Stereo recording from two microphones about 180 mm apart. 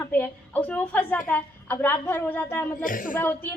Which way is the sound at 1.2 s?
10° left (ahead or behind).